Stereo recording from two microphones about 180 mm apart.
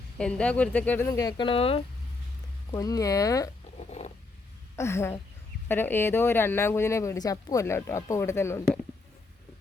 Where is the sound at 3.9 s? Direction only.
40° left (ahead or behind).